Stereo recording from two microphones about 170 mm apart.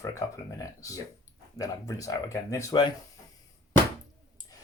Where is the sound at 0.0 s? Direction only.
20° left (ahead or behind).